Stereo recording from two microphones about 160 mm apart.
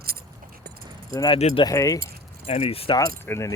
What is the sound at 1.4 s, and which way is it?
Speech, 40° left (ahead or behind).